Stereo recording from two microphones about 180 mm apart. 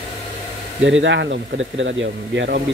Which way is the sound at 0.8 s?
90° right.